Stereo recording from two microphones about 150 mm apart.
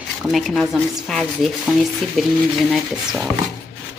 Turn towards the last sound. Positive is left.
turn(degrees=0)  # may be behind; listen again after turning